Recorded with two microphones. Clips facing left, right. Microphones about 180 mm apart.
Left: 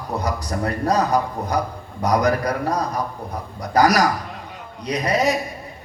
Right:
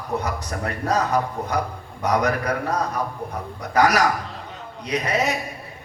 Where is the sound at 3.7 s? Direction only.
35° left (ahead or behind).